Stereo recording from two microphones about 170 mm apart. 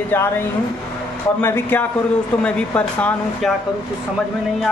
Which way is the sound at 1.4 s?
15° left (ahead or behind).